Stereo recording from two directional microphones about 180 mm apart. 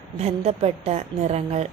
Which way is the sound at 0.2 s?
35° right (ahead or behind).